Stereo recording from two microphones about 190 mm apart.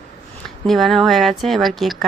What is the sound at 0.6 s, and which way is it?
Speech, centre (ahead or behind).